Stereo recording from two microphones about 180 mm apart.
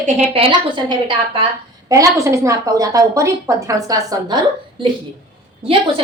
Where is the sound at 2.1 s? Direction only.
15° right (ahead or behind).